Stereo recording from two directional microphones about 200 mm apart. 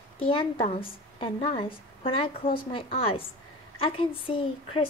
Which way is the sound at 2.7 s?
25° left (ahead or behind).